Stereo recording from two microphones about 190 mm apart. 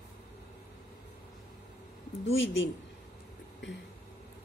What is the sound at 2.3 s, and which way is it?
Speech, 85° left.